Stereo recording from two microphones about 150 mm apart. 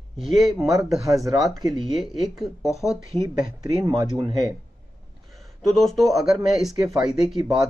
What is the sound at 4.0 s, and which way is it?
Speech, 30° right (ahead or behind).